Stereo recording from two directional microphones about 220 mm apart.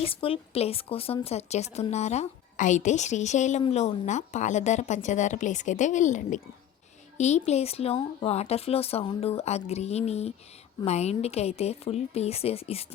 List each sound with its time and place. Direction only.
0.0 s speech: 25° left (ahead or behind)